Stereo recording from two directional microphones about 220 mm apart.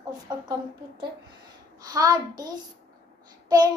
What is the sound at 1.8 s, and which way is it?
Speech, 15° right (ahead or behind).